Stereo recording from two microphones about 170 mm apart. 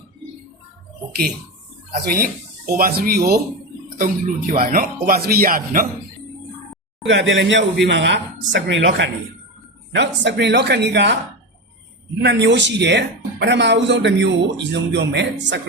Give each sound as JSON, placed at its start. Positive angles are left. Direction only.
{"t": 1.9, "sound": "speech", "side_deg": -60}
{"t": 4.0, "sound": "speech", "side_deg": -55}
{"t": 7.1, "sound": "speech", "side_deg": -90}
{"t": 12.2, "sound": "speech", "side_deg": -85}